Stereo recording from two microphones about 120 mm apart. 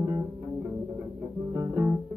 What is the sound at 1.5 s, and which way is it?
Music, 15° right (ahead or behind).